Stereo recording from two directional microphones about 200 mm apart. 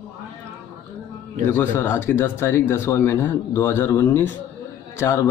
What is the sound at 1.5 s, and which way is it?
Speech, 10° left (ahead or behind).